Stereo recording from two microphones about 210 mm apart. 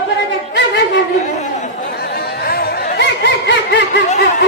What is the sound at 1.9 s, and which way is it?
Chatter, 50° left (ahead or behind).